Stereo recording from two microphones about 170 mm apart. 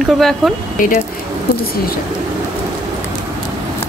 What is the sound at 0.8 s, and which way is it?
Speech, 50° left (ahead or behind).